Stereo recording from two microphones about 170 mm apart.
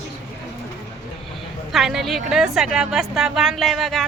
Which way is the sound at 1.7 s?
Centre (ahead or behind).